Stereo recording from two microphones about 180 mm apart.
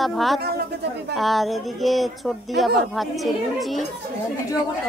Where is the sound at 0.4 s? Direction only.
60° right (ahead or behind).